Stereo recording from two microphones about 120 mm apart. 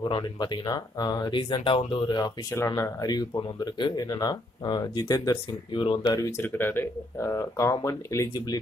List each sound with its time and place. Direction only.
0.0 s speech: 35° left (ahead or behind)
2.5 s speech: 25° left (ahead or behind)
5.8 s speech: 45° left (ahead or behind)
6.1 s speech: 25° left (ahead or behind)